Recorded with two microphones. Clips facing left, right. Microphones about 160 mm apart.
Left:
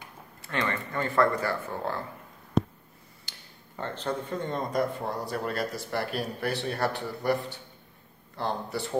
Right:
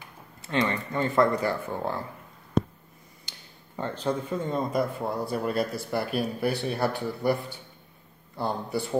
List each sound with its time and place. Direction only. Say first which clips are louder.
0.4 s speech: right 4 dB; 20° right (ahead or behind)
3.3 s speech: right 1 dB; 10° right (ahead or behind)